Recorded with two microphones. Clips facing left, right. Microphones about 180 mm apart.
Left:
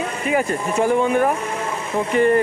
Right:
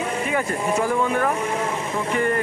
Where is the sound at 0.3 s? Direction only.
20° left (ahead or behind).